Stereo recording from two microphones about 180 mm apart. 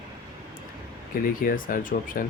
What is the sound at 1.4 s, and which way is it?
Speech, 50° left (ahead or behind).